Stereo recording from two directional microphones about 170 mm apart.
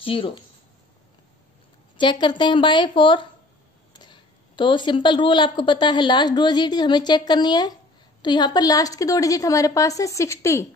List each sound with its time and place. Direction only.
0.0 s speech: 30° left (ahead or behind)
2.0 s a woman's voice: 30° left (ahead or behind)